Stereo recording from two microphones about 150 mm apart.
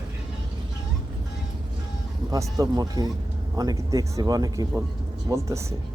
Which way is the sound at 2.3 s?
25° right (ahead or behind).